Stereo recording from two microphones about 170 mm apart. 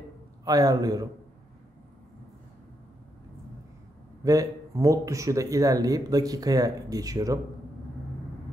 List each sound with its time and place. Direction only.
0.5 s speech: 20° right (ahead or behind)
4.2 s speech: 20° right (ahead or behind)